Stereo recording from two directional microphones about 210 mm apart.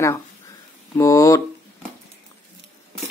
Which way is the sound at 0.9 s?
15° left (ahead or behind).